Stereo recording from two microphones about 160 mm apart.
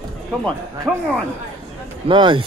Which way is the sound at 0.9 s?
Centre (ahead or behind).